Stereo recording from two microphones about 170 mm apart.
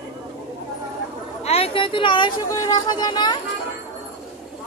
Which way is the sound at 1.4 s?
35° left (ahead or behind).